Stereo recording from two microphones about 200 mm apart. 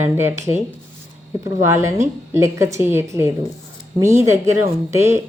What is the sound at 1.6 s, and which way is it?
Speech, 15° right (ahead or behind).